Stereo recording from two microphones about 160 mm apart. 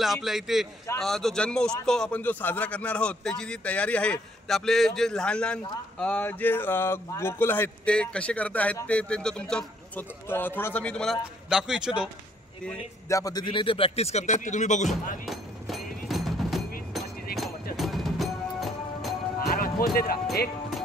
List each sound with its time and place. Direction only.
0.0 s a man's voice: centre (ahead or behind)
13.1 s a man's voice: 25° left (ahead or behind); by 14.9 s 50° left (ahead or behind)
15.2 s music: centre (ahead or behind)
19.4 s music: 65° left (ahead or behind)